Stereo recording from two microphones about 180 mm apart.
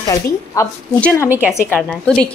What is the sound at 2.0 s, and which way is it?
Speech, 5° left (ahead or behind).